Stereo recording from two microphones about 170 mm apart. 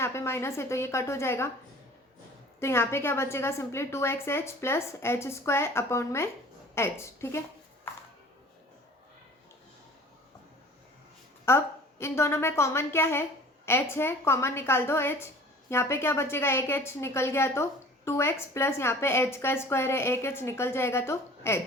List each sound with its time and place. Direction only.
0.0 s a woman's voice: 15° left (ahead or behind)
2.6 s a woman's voice: 15° left (ahead or behind)
11.4 s a woman's voice: 15° left (ahead or behind)